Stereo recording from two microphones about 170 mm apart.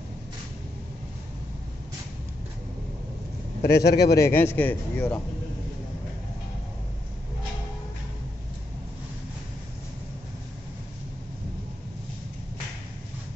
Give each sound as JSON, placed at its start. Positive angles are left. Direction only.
{"t": 3.6, "sound": "a man's voice", "side_deg": 70}
{"t": 4.2, "sound": "a man's voice", "side_deg": 15}